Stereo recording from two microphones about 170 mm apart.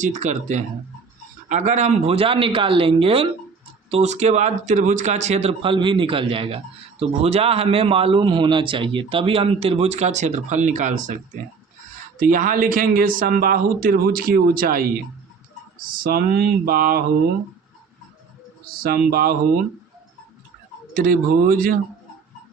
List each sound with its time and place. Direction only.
0.0 s a man's voice: 45° right (ahead or behind)
16.0 s speech: 65° right (ahead or behind)
18.8 s speech: 60° right (ahead or behind)
20.9 s speech: 60° right (ahead or behind)